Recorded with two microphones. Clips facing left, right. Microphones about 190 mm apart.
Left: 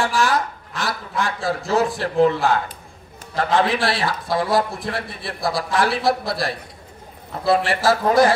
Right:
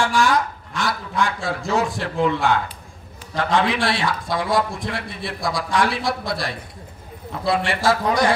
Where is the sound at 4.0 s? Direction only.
30° left (ahead or behind).